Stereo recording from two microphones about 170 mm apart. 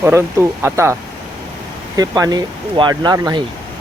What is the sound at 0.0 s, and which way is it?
Speech, 15° right (ahead or behind).